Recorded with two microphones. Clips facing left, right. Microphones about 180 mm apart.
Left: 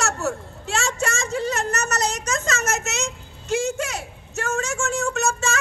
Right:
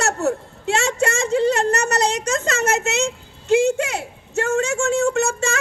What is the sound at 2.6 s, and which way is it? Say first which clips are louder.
Speech: right 6 dB; 60° right (ahead or behind).